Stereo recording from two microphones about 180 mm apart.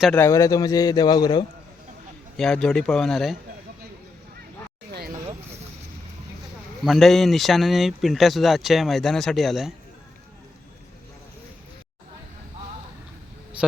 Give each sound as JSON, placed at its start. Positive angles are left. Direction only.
{"t": 0.0, "sound": "a man's voice", "side_deg": 5}
{"t": 0.3, "sound": "a man's voice", "side_deg": 20}
{"t": 2.4, "sound": "speech", "side_deg": 5}
{"t": 4.9, "sound": "vehicle", "side_deg": -60}
{"t": 6.8, "sound": "speech", "side_deg": 0}